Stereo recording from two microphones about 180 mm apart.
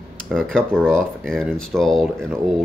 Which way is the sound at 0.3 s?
5° left (ahead or behind).